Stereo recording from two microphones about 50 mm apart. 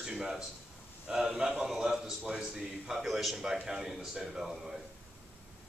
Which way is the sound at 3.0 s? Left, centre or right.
Centre.